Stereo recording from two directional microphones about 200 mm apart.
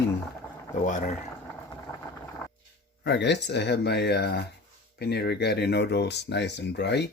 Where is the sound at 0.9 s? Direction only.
40° left (ahead or behind).